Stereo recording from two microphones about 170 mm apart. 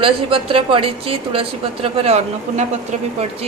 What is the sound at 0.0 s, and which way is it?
A woman's voice, 30° right (ahead or behind).